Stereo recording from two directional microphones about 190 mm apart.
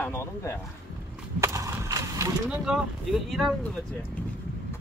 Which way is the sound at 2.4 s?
5° right (ahead or behind).